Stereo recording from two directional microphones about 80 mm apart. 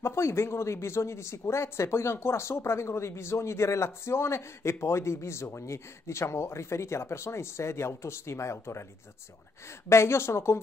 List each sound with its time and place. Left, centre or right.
0.0 s speech: left